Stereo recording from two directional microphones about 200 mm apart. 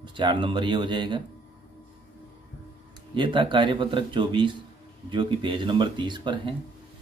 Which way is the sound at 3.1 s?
25° right (ahead or behind).